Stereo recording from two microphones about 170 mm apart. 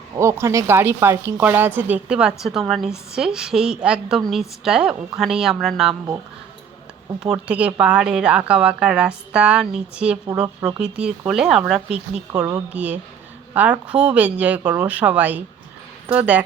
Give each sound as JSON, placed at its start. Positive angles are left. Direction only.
{"t": 0.2, "sound": "speech", "side_deg": -15}
{"t": 7.2, "sound": "speech", "side_deg": -5}
{"t": 10.4, "sound": "speech", "side_deg": -20}
{"t": 10.8, "sound": "speech", "side_deg": -5}
{"t": 12.3, "sound": "speech", "side_deg": -20}
{"t": 12.7, "sound": "speech", "side_deg": -10}